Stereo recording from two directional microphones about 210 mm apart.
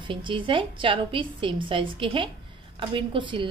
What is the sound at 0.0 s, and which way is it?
A woman's voice, 25° right (ahead or behind).